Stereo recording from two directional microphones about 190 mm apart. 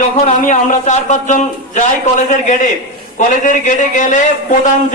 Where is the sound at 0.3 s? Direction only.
40° left (ahead or behind).